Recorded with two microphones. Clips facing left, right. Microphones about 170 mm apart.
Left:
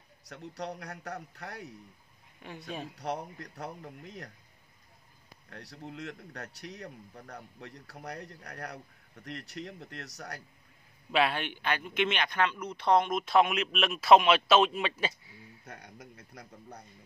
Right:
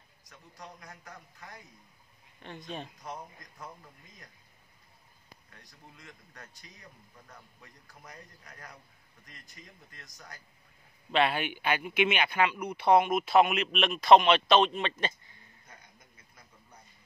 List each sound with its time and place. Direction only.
0.2 s speech: 75° left (ahead or behind)
2.4 s speech: 10° left (ahead or behind)
3.0 s speech: 70° left (ahead or behind)
5.5 s speech: 75° left (ahead or behind)
11.1 s speech: centre (ahead or behind)
15.6 s speech: 70° left (ahead or behind)